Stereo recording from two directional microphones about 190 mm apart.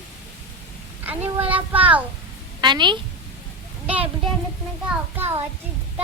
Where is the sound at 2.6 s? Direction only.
25° right (ahead or behind).